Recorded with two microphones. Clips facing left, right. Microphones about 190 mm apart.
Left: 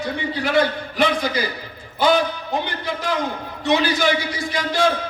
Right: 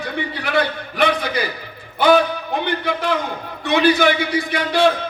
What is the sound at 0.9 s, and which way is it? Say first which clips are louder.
A man's voice: right 2 dB; 60° right (ahead or behind).